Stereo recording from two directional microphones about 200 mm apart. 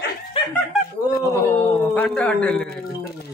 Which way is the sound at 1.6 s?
10° left (ahead or behind).